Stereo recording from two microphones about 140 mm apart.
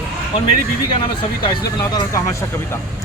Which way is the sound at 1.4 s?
30° left (ahead or behind).